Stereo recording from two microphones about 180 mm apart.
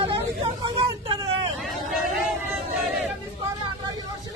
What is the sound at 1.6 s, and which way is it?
Vehicle, centre (ahead or behind).